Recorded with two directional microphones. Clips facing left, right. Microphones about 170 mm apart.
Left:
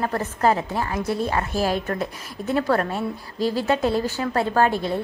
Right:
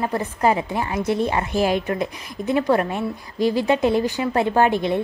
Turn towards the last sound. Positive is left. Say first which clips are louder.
# right 2 dB
turn(degrees=-15)  # may be behind; listen again after turning